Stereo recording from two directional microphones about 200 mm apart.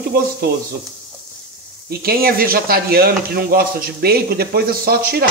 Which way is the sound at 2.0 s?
50° right (ahead or behind).